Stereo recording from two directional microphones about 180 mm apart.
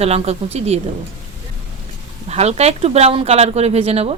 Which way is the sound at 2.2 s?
35° right (ahead or behind).